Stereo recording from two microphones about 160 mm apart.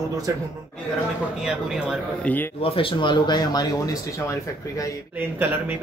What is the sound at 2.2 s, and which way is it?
Speech, 10° left (ahead or behind).